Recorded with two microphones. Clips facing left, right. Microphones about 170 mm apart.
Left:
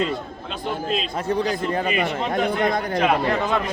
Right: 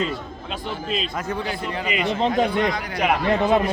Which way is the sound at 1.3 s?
40° left (ahead or behind).